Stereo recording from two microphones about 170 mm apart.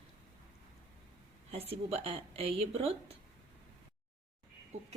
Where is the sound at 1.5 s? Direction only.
35° right (ahead or behind).